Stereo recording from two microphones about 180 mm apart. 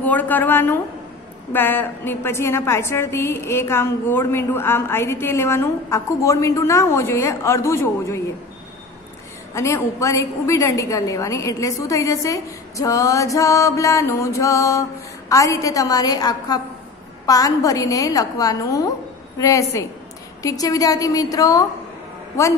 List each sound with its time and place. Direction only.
0.0 s a woman's voice: 10° left (ahead or behind)
9.5 s a woman's voice: 15° left (ahead or behind)